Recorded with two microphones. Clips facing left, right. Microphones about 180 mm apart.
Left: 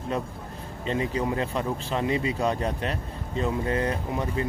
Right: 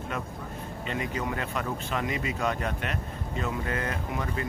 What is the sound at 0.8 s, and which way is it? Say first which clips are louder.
Speech: left 5 dB; 30° left (ahead or behind).